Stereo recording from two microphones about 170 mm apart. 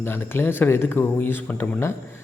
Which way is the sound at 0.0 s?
15° left (ahead or behind).